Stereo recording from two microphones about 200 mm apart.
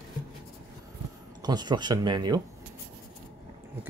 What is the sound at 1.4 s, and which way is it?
Speech, 20° right (ahead or behind).